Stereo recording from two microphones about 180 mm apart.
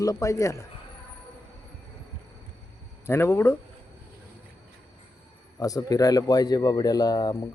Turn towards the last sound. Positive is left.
turn(degrees=20)  # may be behind; listen again after turning